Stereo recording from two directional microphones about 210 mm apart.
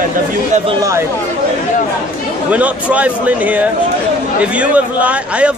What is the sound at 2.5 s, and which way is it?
A man's voice, 5° right (ahead or behind).